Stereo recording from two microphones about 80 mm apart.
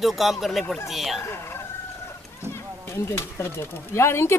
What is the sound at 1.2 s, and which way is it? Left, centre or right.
Speech, left.